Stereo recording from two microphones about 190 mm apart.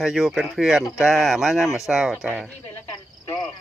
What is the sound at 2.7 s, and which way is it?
Cricket, 15° left (ahead or behind).